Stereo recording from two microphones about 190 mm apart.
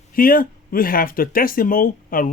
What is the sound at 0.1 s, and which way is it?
Speech, 50° left (ahead or behind).